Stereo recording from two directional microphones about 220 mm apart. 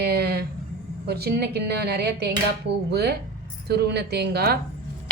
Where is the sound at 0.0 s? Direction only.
45° right (ahead or behind).